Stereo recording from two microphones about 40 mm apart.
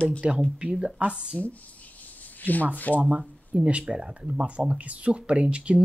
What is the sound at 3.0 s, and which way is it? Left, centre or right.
Speech, right.